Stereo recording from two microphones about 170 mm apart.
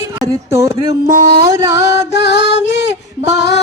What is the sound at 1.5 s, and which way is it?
Music, 15° right (ahead or behind).